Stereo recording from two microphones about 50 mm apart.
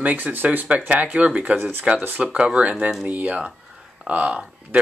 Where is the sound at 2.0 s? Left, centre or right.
Right.